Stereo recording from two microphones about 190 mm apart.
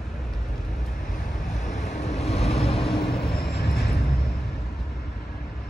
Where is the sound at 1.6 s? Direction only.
35° left (ahead or behind).